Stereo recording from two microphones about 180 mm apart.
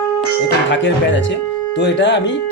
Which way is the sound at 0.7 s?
85° left.